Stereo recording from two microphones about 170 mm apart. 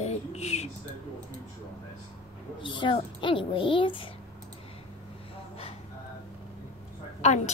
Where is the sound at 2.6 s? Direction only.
30° left (ahead or behind).